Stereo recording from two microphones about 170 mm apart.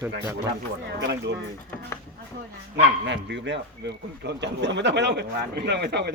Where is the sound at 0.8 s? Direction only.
85° right.